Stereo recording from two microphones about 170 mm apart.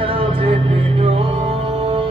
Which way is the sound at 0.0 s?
35° right (ahead or behind).